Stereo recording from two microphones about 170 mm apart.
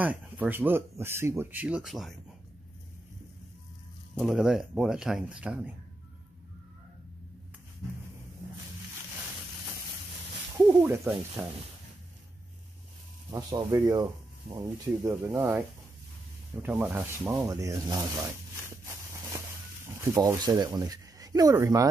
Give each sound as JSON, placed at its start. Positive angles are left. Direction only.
{"t": 0.0, "sound": "speech", "side_deg": -10}
{"t": 4.1, "sound": "speech", "side_deg": 0}
{"t": 10.6, "sound": "speech", "side_deg": -10}
{"t": 13.3, "sound": "speech", "side_deg": -20}
{"t": 15.0, "sound": "speech", "side_deg": -15}
{"t": 16.6, "sound": "speech", "side_deg": -10}
{"t": 20.2, "sound": "speech", "side_deg": -20}